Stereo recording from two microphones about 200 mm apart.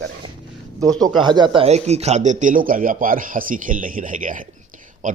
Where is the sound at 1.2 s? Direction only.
25° right (ahead or behind).